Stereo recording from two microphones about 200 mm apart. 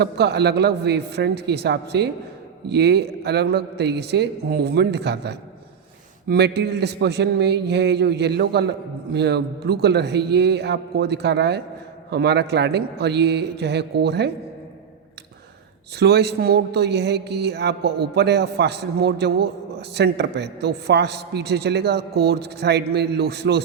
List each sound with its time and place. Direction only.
0.0 s a man's voice: 55° right (ahead or behind)
16.0 s a man's voice: 55° right (ahead or behind)